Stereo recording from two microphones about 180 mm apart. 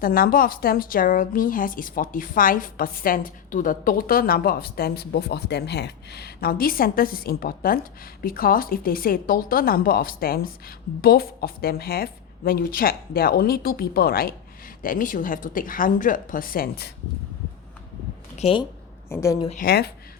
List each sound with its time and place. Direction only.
0.0 s a woman's voice: 55° left (ahead or behind)
18.3 s speech: 30° left (ahead or behind)
19.0 s a woman's voice: 15° left (ahead or behind)
19.5 s a woman's voice: 60° left (ahead or behind)